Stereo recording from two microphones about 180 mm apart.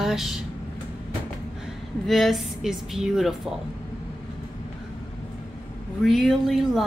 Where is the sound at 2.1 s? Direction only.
Centre (ahead or behind).